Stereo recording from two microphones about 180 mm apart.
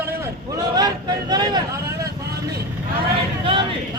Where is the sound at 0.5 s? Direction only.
20° right (ahead or behind).